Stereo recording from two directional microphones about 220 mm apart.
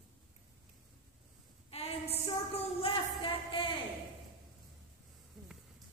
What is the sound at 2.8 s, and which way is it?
Music, 25° left (ahead or behind).